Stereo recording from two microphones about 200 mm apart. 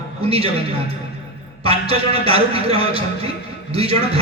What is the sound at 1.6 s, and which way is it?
A man's voice, 30° right (ahead or behind).